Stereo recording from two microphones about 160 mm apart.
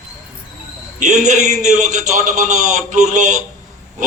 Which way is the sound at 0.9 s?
50° right (ahead or behind).